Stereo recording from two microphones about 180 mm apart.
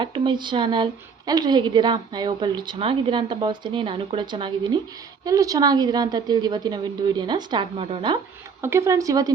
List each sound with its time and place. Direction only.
0.0 s a woman's voice: 25° right (ahead or behind)
8.6 s speech: 15° right (ahead or behind)